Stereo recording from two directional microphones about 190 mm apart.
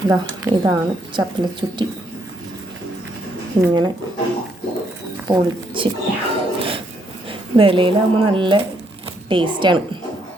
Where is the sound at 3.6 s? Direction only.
20° right (ahead or behind).